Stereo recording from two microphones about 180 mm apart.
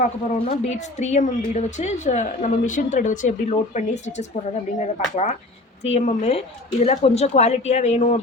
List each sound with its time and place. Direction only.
0.0 s speech: 40° left (ahead or behind)